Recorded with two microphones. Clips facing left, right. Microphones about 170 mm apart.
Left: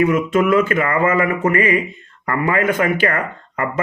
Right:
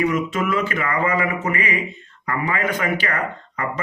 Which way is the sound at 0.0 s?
55° left (ahead or behind).